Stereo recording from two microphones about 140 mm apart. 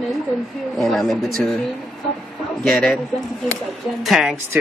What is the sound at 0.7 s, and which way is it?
Speech, centre (ahead or behind).